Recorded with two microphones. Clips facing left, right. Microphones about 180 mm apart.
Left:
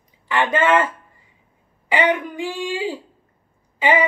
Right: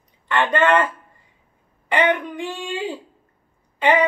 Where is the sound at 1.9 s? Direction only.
5° left (ahead or behind).